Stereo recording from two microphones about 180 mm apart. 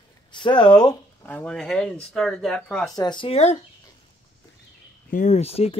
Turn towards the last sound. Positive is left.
turn(degrees=35)  # may be behind; listen again after turning